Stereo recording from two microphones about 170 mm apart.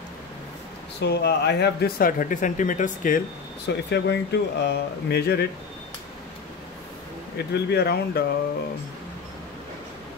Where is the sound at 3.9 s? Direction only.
90° left; by 5.4 s 70° left (ahead or behind).